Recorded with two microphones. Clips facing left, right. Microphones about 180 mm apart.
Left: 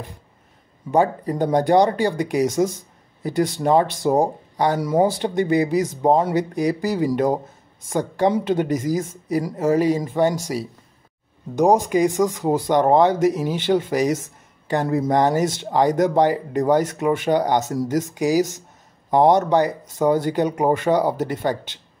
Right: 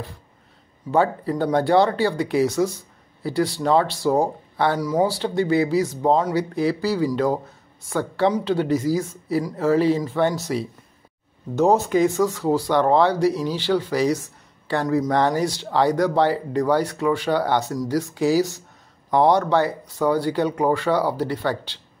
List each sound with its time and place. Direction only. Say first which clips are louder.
0.9 s speech: left 1 dB; 15° left (ahead or behind)